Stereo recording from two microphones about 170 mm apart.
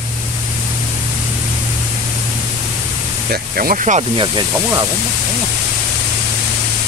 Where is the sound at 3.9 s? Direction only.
30° right (ahead or behind).